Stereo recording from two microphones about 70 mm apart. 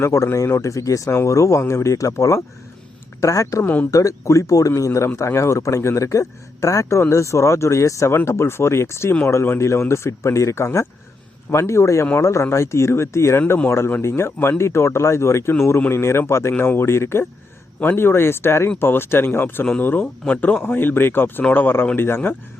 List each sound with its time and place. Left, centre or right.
0.0 s a man's voice: left
3.6 s speech: left
3.9 s a man's voice: left